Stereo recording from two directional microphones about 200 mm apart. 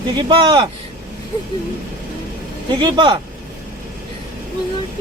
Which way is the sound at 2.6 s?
25° right (ahead or behind).